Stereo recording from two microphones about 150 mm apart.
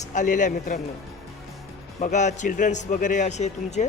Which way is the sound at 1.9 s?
55° left (ahead or behind).